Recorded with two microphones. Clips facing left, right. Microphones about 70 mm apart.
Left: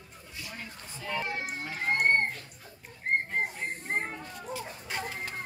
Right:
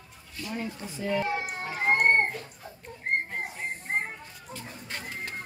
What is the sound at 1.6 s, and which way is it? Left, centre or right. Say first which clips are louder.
Speech: right 4 dB; right.